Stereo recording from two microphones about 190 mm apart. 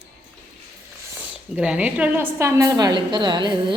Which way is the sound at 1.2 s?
5° right (ahead or behind).